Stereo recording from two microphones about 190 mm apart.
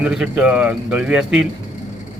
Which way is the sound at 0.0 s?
5° right (ahead or behind).